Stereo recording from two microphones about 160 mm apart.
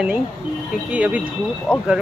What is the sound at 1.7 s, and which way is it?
Speech, 15° left (ahead or behind).